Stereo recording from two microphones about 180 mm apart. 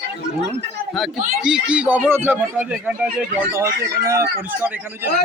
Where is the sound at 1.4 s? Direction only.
5° right (ahead or behind).